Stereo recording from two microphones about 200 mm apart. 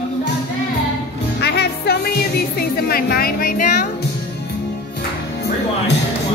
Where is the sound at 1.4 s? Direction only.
55° left (ahead or behind).